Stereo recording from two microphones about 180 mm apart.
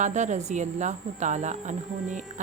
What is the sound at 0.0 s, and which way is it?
Speech, 40° right (ahead or behind).